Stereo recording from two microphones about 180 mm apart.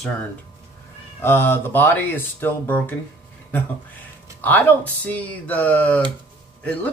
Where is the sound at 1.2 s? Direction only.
10° left (ahead or behind).